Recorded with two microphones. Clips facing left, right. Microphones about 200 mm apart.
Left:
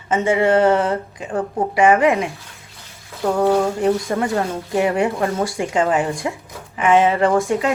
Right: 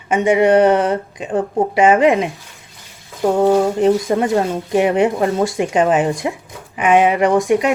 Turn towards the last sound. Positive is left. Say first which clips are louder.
# right 3 dB
turn(degrees=-15)  # may be behind; listen again after turning